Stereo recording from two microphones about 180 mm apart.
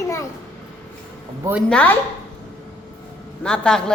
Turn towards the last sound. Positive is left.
turn(degrees=5)  # may be behind; listen again after turning